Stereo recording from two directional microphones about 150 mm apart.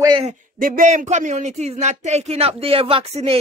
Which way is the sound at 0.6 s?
65° right (ahead or behind).